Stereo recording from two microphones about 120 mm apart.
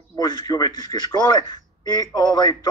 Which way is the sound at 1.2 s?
35° left (ahead or behind).